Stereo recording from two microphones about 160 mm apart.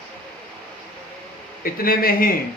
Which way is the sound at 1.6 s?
65° left (ahead or behind).